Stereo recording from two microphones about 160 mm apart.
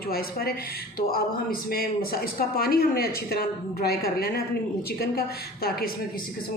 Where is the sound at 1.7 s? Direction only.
70° left (ahead or behind).